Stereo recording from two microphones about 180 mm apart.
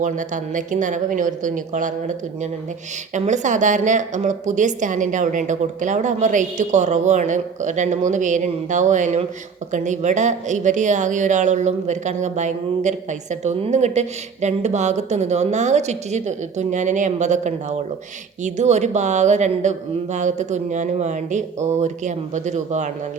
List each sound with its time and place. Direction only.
0.0 s a woman's voice: 45° right (ahead or behind)